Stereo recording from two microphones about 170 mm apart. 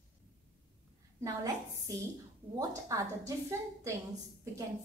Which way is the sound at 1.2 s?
20° right (ahead or behind).